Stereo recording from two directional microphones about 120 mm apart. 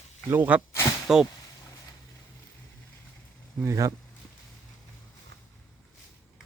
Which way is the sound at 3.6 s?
25° right (ahead or behind).